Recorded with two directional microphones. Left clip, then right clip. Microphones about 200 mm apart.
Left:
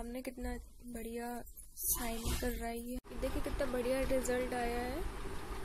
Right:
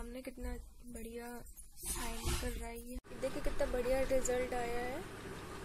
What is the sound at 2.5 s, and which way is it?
Speech, 35° left (ahead or behind).